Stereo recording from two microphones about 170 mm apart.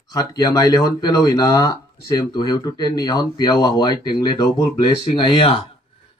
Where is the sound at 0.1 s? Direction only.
20° left (ahead or behind).